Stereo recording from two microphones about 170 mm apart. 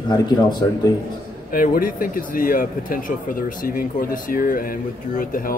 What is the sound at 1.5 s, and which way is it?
Speech, 55° left (ahead or behind).